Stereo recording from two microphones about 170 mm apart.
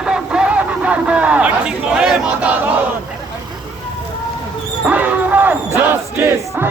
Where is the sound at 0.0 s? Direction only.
5° right (ahead or behind).